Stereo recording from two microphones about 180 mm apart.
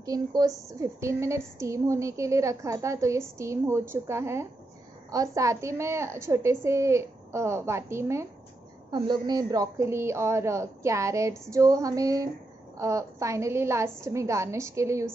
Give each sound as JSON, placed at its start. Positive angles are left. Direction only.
{"t": 0.0, "sound": "a woman's voice", "side_deg": -20}